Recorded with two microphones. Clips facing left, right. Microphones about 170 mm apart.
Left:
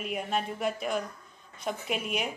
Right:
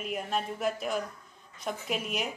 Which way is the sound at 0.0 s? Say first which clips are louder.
Left 1 dB; centre (ahead or behind).